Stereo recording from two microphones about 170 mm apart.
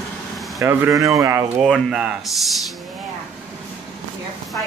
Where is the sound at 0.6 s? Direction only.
15° right (ahead or behind).